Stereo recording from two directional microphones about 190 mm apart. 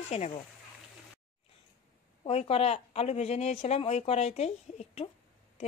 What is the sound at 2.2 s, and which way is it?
Speech, 30° left (ahead or behind).